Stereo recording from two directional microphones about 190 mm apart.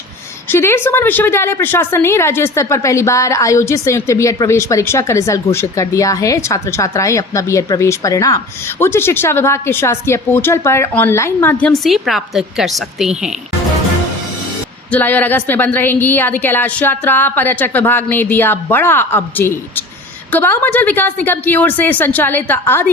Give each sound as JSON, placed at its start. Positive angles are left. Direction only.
{"t": 0.4, "sound": "a woman's voice", "side_deg": 10}
{"t": 14.8, "sound": "a woman's voice", "side_deg": 10}